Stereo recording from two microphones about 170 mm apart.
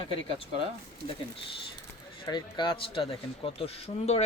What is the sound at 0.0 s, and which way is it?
Speech, 30° left (ahead or behind).